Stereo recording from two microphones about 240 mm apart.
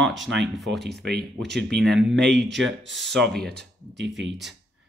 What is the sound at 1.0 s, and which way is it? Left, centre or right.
Speech, right.